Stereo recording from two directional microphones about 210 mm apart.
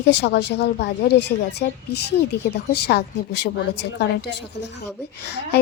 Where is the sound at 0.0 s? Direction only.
55° left (ahead or behind).